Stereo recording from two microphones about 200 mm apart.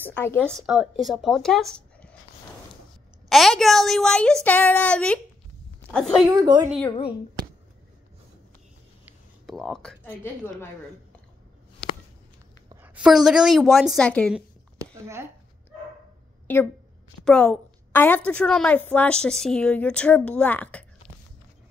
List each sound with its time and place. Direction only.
0.0 s a woman's voice: 10° left (ahead or behind)
3.3 s a woman's voice: centre (ahead or behind)
6.3 s a woman's voice: 20° right (ahead or behind)
9.0 s speech: centre (ahead or behind)
12.8 s a woman's voice: 5° right (ahead or behind)
14.8 s a sound: 15° right (ahead or behind)
17.2 s a woman's voice: 5° left (ahead or behind)